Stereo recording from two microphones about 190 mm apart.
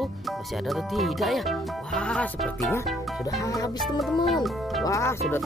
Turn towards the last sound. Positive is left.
turn(degrees=15)  # may be behind; listen again after turning